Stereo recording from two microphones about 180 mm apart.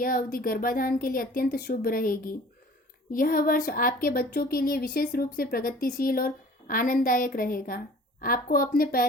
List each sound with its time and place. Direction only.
0.0 s speech: 50° left (ahead or behind)